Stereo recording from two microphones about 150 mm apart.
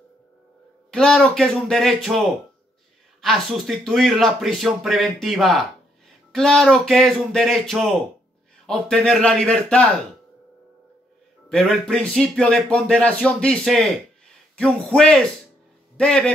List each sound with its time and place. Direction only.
0.9 s a man's voice: 5° left (ahead or behind)
11.4 s a man's voice: 5° left (ahead or behind)